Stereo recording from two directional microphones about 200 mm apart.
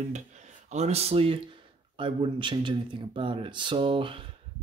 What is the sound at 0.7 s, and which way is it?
A man's voice, 35° right (ahead or behind).